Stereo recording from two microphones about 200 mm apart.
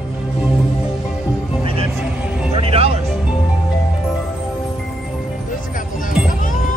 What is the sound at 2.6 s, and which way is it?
Music, 30° right (ahead or behind).